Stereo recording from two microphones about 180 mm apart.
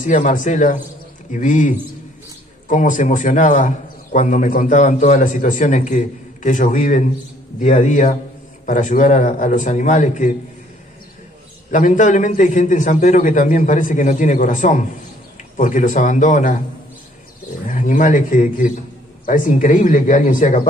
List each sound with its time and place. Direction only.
0.0 s a man's voice: 45° left (ahead or behind)
11.7 s a man's voice: 45° left (ahead or behind)
17.6 s a man's voice: 45° left (ahead or behind)